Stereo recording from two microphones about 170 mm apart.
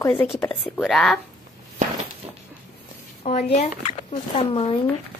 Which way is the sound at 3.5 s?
40° left (ahead or behind).